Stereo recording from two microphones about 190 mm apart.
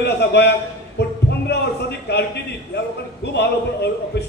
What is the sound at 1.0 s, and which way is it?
Music, 60° left (ahead or behind).